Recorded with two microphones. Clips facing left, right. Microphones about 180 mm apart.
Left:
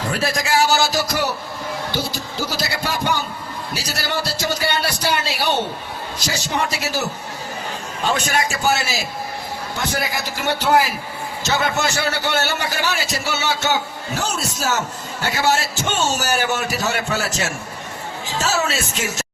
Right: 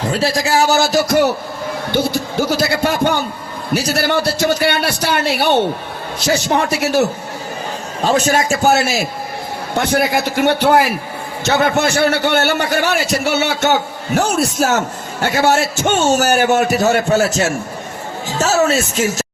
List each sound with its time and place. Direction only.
0.1 s a man's voice: 30° right (ahead or behind); by 7.0 s 60° right (ahead or behind)
8.0 s a man's voice: 40° right (ahead or behind)